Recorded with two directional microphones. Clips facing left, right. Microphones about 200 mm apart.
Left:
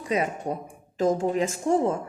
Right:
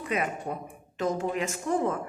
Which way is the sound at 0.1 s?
30° left (ahead or behind).